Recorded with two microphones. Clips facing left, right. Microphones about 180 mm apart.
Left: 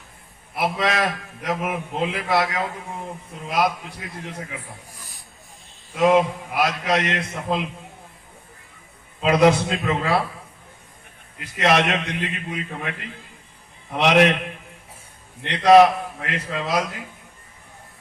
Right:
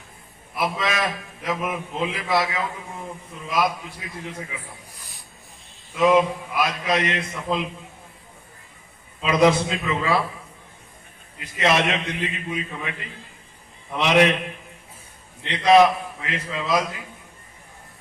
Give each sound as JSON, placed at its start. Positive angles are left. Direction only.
{"t": 0.5, "sound": "a man's voice", "side_deg": 65}
{"t": 6.0, "sound": "a man's voice", "side_deg": 60}
{"t": 9.2, "sound": "a man's voice", "side_deg": 65}
{"t": 11.3, "sound": "a man's voice", "side_deg": 60}
{"t": 15.4, "sound": "a man's voice", "side_deg": 65}